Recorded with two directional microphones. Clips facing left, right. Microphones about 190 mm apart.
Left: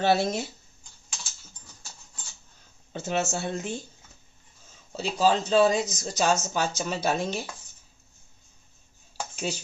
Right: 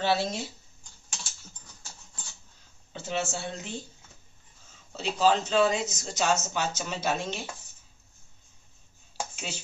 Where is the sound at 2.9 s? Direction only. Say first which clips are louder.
Left 4 dB; 45° left (ahead or behind).